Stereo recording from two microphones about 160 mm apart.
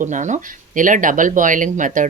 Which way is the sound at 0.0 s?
50° right (ahead or behind).